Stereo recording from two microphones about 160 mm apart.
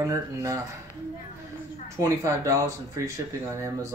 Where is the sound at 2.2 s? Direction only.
20° right (ahead or behind).